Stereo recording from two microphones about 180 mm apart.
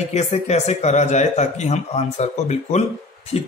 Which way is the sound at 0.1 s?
40° left (ahead or behind).